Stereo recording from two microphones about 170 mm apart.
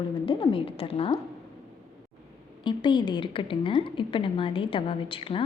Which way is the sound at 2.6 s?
25° left (ahead or behind).